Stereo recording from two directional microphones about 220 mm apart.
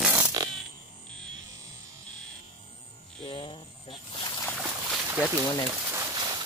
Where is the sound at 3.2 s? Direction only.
25° left (ahead or behind).